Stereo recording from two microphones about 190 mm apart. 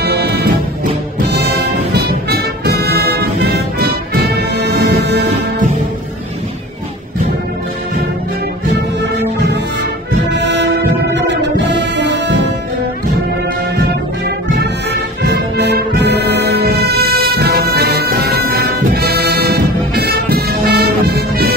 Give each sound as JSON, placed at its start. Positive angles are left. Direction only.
{"t": 0.0, "sound": "music", "side_deg": -60}
{"t": 4.1, "sound": "brass instrument", "side_deg": -55}
{"t": 10.4, "sound": "music", "side_deg": -65}
{"t": 14.6, "sound": "brass instrument", "side_deg": -60}